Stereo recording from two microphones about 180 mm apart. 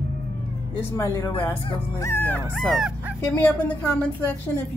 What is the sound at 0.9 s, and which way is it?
Speech, 15° left (ahead or behind).